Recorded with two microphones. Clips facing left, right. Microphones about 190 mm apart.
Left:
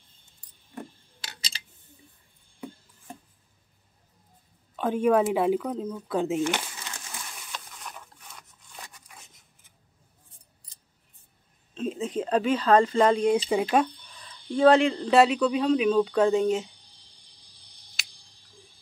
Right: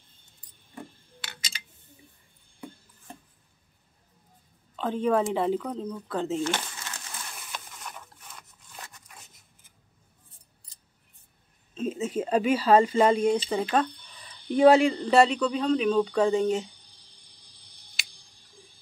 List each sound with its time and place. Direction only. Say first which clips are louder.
1.2 s a sound: even; 35° left (ahead or behind)
4.7 s speech: left 3 dB; 10° left (ahead or behind)
7.3 s printer: even; centre (ahead or behind)
11.7 s speech: even; 5° right (ahead or behind)
13.5 s speech: left 3 dB; 10° left (ahead or behind)
14.2 s a sound: right 1 dB; 15° right (ahead or behind)
14.8 s speech: even; centre (ahead or behind)
18.0 s tick: right 1 dB; centre (ahead or behind)